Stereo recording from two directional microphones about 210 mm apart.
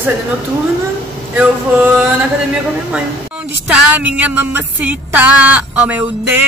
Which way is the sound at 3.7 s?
5° right (ahead or behind).